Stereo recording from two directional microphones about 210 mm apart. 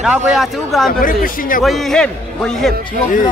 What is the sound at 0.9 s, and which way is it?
Speech, 40° left (ahead or behind).